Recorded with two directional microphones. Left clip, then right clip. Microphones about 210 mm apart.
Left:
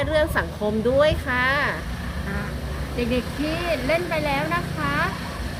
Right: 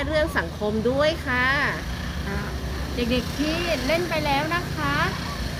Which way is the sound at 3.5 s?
55° right (ahead or behind).